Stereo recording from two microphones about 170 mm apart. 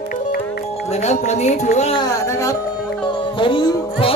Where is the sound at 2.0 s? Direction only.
15° left (ahead or behind).